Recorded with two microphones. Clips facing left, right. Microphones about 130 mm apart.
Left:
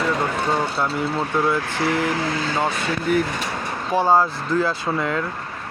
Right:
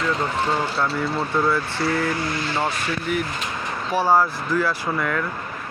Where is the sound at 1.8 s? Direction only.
90° left.